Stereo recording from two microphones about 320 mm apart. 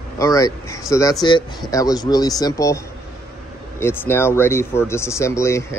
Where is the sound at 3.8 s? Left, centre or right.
Centre.